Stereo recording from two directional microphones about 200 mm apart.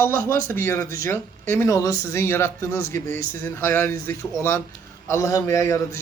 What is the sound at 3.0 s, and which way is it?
Speech, 40° right (ahead or behind).